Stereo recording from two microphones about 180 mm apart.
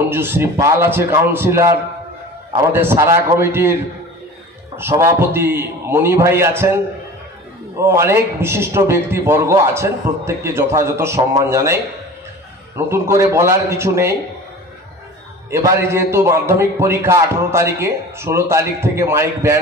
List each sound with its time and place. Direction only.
0.1 s a man's voice: 10° right (ahead or behind)
2.7 s a man's voice: 10° right (ahead or behind)
4.7 s a man's voice: 15° right (ahead or behind)
7.8 s a man's voice: 15° right (ahead or behind)
15.5 s a man's voice: 15° right (ahead or behind)